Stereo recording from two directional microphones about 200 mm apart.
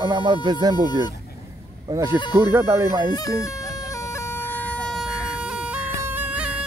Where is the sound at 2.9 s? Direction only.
20° left (ahead or behind); by 6.5 s 10° right (ahead or behind).